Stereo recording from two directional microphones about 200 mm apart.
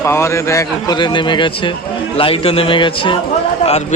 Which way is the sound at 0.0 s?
15° left (ahead or behind).